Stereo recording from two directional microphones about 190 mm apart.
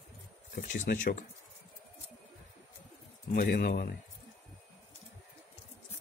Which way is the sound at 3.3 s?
50° left (ahead or behind).